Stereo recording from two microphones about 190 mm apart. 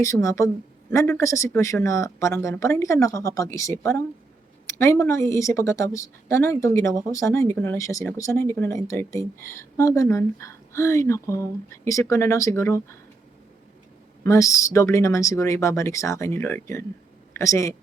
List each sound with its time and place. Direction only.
0.0 s speech: 15° left (ahead or behind)
14.3 s speech: 15° left (ahead or behind)